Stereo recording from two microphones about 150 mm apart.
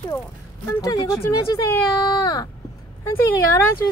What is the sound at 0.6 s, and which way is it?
Speech, 25° left (ahead or behind).